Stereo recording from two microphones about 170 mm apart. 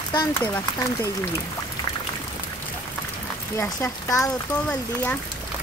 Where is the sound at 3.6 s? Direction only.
15° left (ahead or behind).